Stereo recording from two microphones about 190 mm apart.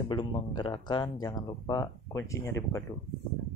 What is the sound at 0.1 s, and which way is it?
Speech, 25° left (ahead or behind).